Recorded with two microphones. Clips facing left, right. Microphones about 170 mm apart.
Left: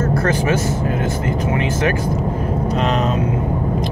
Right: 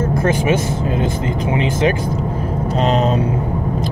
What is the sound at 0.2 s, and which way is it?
Speech, 10° right (ahead or behind).